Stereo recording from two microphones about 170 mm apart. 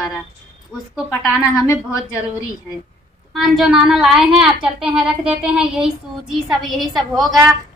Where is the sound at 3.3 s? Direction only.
Centre (ahead or behind).